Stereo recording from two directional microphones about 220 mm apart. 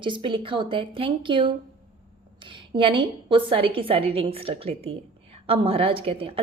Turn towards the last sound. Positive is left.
turn(degrees=-25)  # may be behind; listen again after turning